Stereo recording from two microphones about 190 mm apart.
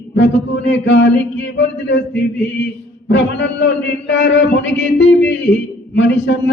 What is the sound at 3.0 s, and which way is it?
A man's voice, 70° left (ahead or behind).